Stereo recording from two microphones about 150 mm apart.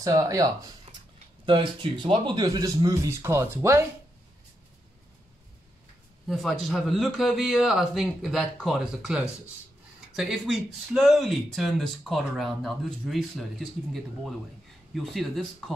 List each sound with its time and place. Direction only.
0.0 s a man's voice: 20° right (ahead or behind)
0.9 s a sound: 45° right (ahead or behind)
1.4 s a man's voice: 35° right (ahead or behind); by 3.8 s 20° right (ahead or behind)
6.2 s speech: centre (ahead or behind)